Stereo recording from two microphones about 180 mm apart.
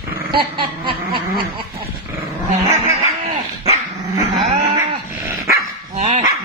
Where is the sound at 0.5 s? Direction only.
30° right (ahead or behind).